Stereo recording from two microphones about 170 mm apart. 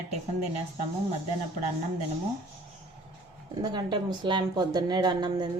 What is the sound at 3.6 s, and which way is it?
A woman's voice, 25° right (ahead or behind).